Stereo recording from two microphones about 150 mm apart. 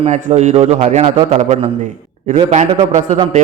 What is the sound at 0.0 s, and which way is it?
A man's voice, 50° right (ahead or behind).